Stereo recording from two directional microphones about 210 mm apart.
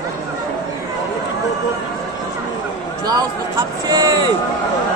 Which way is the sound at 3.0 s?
20° right (ahead or behind).